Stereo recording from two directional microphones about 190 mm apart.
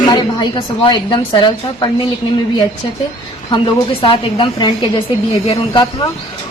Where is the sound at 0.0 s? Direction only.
20° left (ahead or behind).